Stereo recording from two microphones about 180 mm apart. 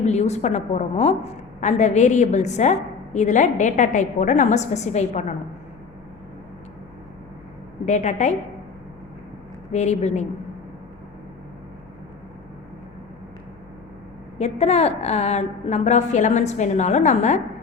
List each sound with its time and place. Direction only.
0.0 s a woman's voice: 40° left (ahead or behind)
7.9 s a woman's voice: 40° left (ahead or behind)
9.7 s a woman's voice: 40° left (ahead or behind)
14.3 s a woman's voice: 35° left (ahead or behind)